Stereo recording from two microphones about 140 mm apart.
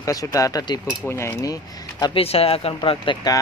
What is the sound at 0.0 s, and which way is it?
Speech, 25° left (ahead or behind).